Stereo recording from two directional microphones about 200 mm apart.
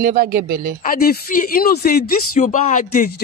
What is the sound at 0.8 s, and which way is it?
Speech, 45° left (ahead or behind).